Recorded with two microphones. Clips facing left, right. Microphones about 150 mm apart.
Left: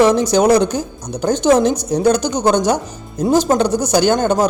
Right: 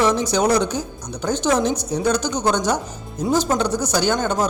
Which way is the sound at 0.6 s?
90° left.